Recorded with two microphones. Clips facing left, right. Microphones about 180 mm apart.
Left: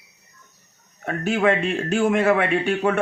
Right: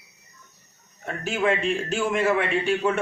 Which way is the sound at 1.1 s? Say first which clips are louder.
Left 4 dB; 60° left (ahead or behind).